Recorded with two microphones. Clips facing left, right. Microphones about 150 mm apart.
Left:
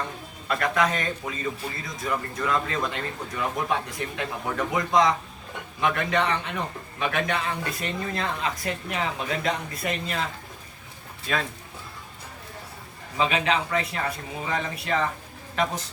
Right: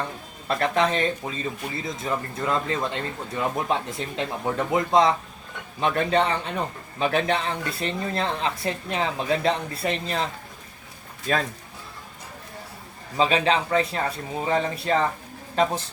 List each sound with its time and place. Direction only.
0.4 s a woman's voice: 30° right (ahead or behind)
11.3 s a woman's voice: 40° right (ahead or behind)
13.1 s a woman's voice: 30° right (ahead or behind)